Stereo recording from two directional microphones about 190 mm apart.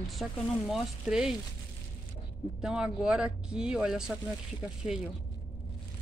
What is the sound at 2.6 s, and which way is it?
Speech, 5° right (ahead or behind).